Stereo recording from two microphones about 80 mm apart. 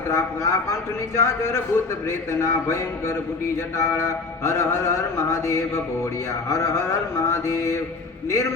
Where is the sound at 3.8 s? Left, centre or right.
Left.